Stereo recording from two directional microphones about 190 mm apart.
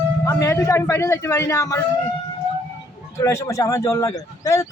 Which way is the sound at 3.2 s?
15° left (ahead or behind).